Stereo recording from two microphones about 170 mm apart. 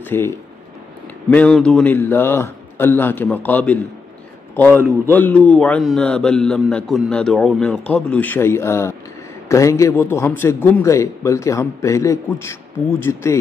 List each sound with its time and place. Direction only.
0.0 s a man's voice: 15° left (ahead or behind)
1.3 s a man's voice: 5° left (ahead or behind)